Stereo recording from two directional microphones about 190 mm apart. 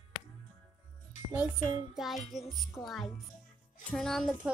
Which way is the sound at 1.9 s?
Centre (ahead or behind).